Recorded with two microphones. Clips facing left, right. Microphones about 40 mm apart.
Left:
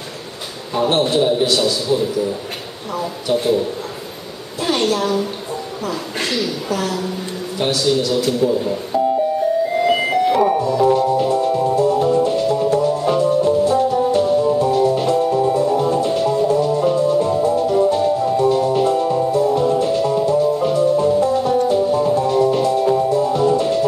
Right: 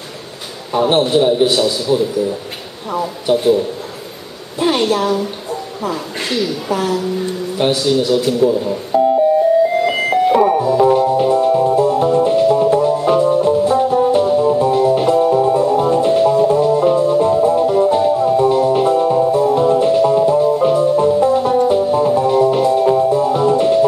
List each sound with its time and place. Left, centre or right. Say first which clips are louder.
0.7 s a man's voice: right 3 dB; right
3.3 s a woman's voice: right 4 dB; centre
4.6 s a woman's voice: right 3 dB; centre
5.1 s a woman's voice: right 2 dB; centre
9.8 s music: right 1 dB; centre